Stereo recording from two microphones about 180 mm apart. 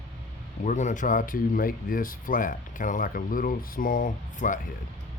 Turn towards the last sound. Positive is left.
turn(degrees=45)  # may be behind; listen again after turning